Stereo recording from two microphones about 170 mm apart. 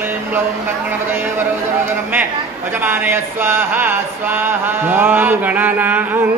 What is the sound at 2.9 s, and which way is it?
Chant, 15° right (ahead or behind).